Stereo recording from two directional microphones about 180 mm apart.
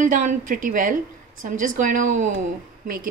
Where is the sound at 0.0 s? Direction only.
45° right (ahead or behind).